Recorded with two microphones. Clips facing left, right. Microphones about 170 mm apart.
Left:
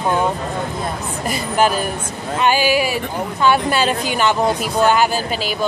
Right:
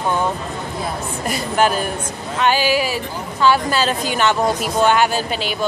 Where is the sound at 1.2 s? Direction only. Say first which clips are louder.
Left 1 dB; 5° left (ahead or behind).